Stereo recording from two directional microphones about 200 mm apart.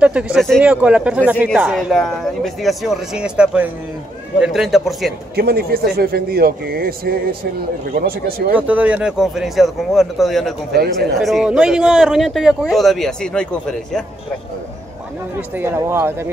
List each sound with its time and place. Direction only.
0.0 s speech: 5° right (ahead or behind)
5.3 s a man's voice: 50° right (ahead or behind)
8.5 s speech: 5° right (ahead or behind)
15.5 s speech: 10° right (ahead or behind)